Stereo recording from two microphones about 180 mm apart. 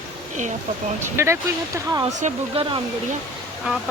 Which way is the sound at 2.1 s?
40° right (ahead or behind).